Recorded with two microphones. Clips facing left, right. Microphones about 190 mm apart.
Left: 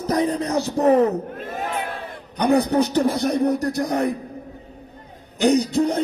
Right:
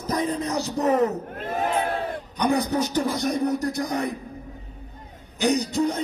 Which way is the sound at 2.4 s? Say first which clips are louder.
Left 5 dB; 60° left (ahead or behind).